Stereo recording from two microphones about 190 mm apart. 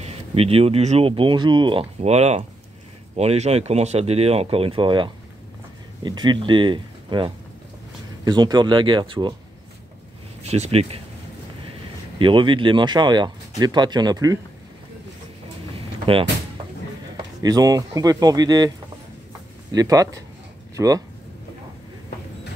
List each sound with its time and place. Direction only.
0.0 s speech: 30° right (ahead or behind)
10.4 s speech: 35° right (ahead or behind)
12.2 s speech: 25° right (ahead or behind)
16.1 s speech: 30° right (ahead or behind)
17.4 s speech: 20° right (ahead or behind)
19.7 s speech: 20° right (ahead or behind)